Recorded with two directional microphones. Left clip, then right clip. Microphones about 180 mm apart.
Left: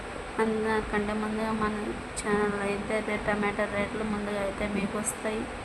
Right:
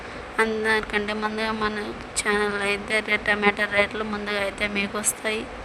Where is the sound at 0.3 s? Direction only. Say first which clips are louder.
Right 6 dB; 55° right (ahead or behind).